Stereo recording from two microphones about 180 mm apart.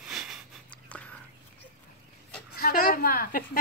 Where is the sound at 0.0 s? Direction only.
Centre (ahead or behind).